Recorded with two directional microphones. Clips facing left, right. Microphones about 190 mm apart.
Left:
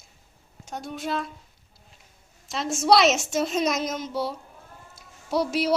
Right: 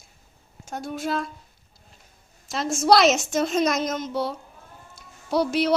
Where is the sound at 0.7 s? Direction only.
Centre (ahead or behind).